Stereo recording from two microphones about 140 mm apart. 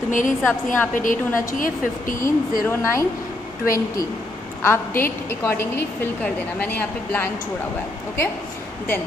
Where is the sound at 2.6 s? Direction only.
20° left (ahead or behind).